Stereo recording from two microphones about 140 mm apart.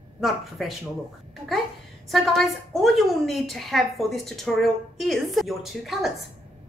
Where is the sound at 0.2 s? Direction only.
Centre (ahead or behind).